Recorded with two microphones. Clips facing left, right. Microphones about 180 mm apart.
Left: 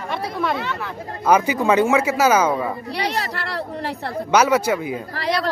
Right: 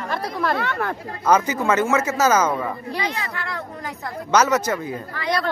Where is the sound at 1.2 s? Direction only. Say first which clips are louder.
Left 2 dB; 10° left (ahead or behind).